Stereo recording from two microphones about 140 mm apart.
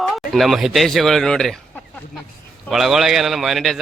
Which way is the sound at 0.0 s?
Centre (ahead or behind).